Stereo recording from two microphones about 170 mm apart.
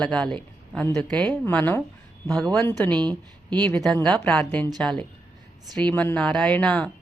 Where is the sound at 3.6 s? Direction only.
5° left (ahead or behind).